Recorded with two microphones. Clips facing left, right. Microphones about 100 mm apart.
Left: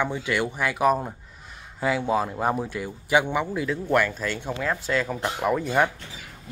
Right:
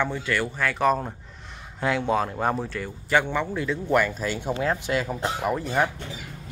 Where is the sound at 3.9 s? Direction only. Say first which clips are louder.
Right 1 dB; 5° right (ahead or behind).